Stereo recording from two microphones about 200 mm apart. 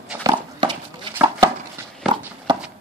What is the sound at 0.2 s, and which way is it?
Dog, 20° right (ahead or behind).